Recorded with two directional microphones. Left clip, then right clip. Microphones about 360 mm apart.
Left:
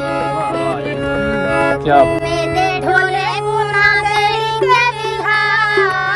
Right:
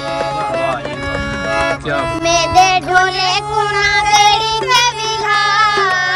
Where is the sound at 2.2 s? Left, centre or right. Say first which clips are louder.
Right 5 dB; centre.